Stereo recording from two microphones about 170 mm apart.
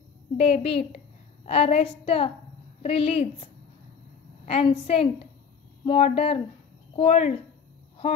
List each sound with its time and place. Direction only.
0.4 s a woman's voice: 35° left (ahead or behind)
4.5 s a woman's voice: 35° left (ahead or behind)